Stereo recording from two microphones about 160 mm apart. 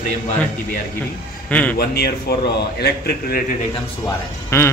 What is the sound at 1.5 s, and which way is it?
Speech, 10° left (ahead or behind).